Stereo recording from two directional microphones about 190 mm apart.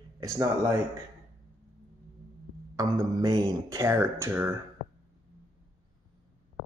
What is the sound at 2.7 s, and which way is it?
Speech, 20° right (ahead or behind).